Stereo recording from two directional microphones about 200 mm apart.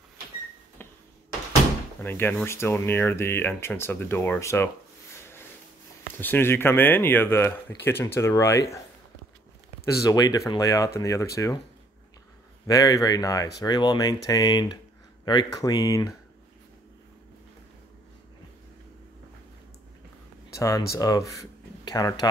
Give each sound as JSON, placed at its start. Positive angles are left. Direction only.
{"t": 2.0, "sound": "speech", "side_deg": 10}
{"t": 6.1, "sound": "speech", "side_deg": 10}
{"t": 10.0, "sound": "speech", "side_deg": 20}
{"t": 12.6, "sound": "speech", "side_deg": 15}
{"t": 20.5, "sound": "speech", "side_deg": 15}